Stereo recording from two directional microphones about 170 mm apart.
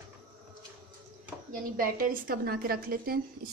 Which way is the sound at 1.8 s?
55° right (ahead or behind).